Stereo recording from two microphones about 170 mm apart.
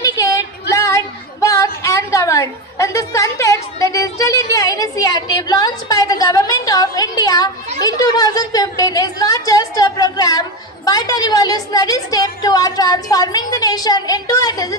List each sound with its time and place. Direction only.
0.0 s female singing: 20° left (ahead or behind)
7.8 s a woman's voice: 20° left (ahead or behind)